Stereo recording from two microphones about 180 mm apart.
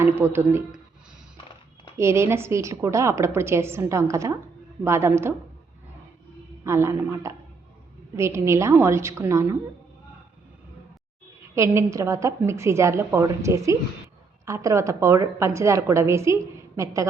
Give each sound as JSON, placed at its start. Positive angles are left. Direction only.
{"t": 0.0, "sound": "a woman's voice", "side_deg": -15}
{"t": 2.0, "sound": "a woman's voice", "side_deg": -15}
{"t": 6.7, "sound": "a woman's voice", "side_deg": -15}
{"t": 11.5, "sound": "a woman's voice", "side_deg": -15}